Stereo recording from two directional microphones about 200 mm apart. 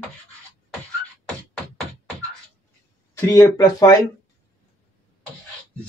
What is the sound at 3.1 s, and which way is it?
Speech, 15° left (ahead or behind).